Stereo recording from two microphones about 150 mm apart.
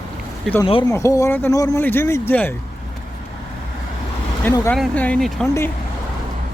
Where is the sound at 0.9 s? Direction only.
20° left (ahead or behind).